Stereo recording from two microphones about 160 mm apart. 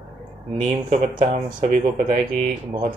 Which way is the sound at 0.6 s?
45° right (ahead or behind).